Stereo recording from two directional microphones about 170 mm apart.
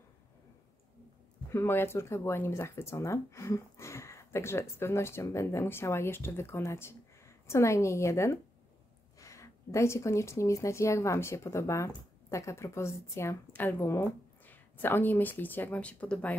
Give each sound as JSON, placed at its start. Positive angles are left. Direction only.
{"t": 1.5, "sound": "speech", "side_deg": 15}